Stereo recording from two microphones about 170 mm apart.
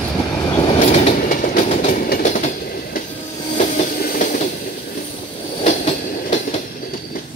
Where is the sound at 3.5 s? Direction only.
55° left (ahead or behind).